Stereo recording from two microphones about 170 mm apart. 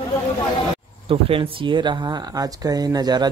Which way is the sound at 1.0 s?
35° right (ahead or behind).